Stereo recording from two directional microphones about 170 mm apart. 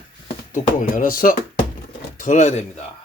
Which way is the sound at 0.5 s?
50° left (ahead or behind).